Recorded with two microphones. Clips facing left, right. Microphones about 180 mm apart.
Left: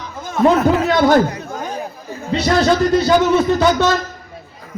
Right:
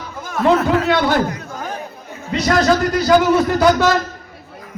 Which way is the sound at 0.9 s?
45° left (ahead or behind).